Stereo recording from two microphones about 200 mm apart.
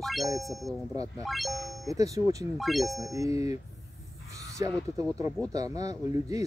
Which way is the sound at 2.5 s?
Centre (ahead or behind).